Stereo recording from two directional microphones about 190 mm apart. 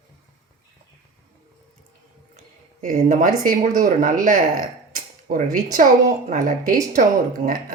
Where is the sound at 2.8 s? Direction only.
45° right (ahead or behind).